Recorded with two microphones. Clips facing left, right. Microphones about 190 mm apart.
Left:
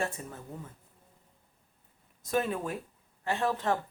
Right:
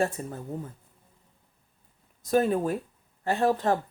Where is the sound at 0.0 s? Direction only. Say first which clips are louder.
Right 7 dB; 35° right (ahead or behind).